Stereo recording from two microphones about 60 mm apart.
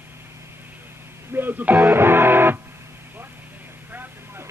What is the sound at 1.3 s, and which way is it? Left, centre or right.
Speech, right.